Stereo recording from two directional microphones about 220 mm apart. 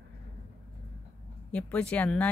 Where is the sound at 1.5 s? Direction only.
5° left (ahead or behind).